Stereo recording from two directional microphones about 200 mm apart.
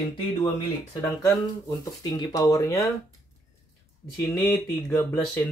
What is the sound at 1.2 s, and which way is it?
Speech, 20° left (ahead or behind).